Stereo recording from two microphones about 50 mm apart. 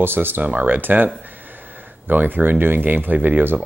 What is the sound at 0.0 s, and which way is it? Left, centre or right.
Speech, right.